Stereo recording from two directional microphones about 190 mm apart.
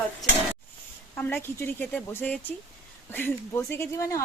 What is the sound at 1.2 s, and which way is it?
Speech, 10° left (ahead or behind).